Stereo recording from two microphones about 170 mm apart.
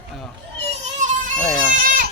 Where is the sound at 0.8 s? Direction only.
45° right (ahead or behind).